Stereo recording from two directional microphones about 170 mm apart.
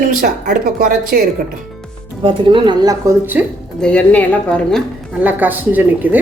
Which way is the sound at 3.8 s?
5° left (ahead or behind).